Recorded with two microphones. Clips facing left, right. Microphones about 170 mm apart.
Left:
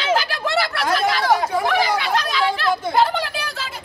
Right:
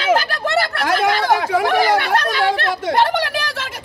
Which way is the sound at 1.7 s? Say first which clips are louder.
Right 4 dB; 55° right (ahead or behind).